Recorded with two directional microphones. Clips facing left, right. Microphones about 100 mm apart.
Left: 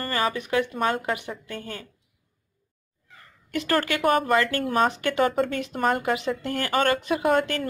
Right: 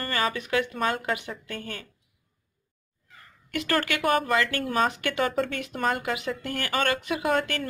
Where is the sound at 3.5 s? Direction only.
25° left (ahead or behind).